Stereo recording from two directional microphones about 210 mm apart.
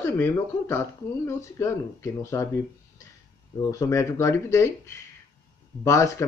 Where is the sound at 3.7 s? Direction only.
15° left (ahead or behind).